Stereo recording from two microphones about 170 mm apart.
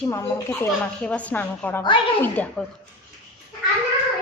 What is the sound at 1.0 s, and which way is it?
A woman's voice, 5° left (ahead or behind).